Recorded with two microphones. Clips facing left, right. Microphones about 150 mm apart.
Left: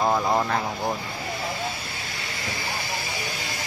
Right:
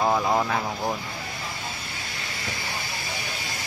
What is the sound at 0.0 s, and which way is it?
Speech, centre (ahead or behind).